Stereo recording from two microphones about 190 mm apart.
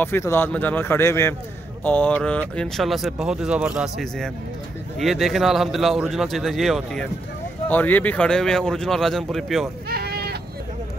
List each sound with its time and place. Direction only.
0.0 s a man's voice: 15° left (ahead or behind)
9.8 s sheep: 55° right (ahead or behind)